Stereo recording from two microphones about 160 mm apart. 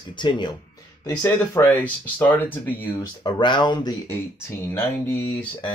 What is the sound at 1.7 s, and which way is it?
Speech, 10° left (ahead or behind).